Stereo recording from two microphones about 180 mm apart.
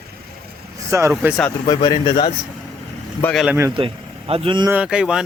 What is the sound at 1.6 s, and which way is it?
Speech, 25° left (ahead or behind).